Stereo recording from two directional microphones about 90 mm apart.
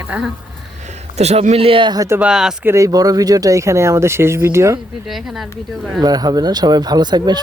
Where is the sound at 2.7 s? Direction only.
35° right (ahead or behind).